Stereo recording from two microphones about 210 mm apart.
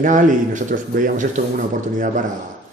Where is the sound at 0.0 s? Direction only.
40° right (ahead or behind).